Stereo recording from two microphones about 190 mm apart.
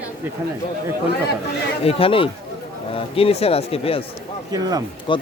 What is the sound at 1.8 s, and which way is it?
A man's voice, 30° left (ahead or behind).